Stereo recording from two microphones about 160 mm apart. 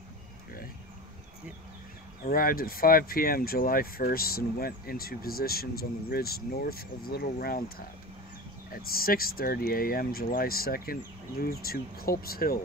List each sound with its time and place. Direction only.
2.2 s speech: 65° left (ahead or behind)
8.9 s speech: 65° left (ahead or behind)